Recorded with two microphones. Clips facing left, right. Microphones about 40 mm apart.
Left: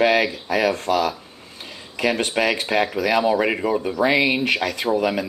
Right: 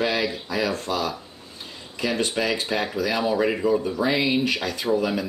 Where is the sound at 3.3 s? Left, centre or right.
Left.